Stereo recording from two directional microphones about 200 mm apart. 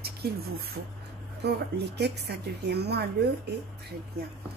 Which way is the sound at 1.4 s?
55° right (ahead or behind).